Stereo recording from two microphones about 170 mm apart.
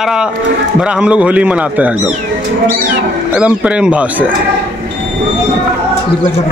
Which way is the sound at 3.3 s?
5° right (ahead or behind).